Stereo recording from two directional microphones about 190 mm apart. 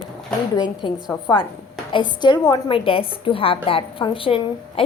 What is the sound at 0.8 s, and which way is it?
A woman's voice, 25° left (ahead or behind).